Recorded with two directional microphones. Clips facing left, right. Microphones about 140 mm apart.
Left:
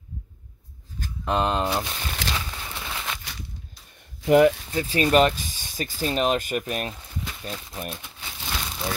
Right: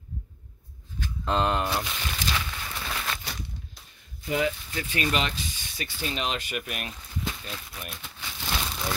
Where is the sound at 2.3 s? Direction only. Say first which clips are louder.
Even; 20° left (ahead or behind).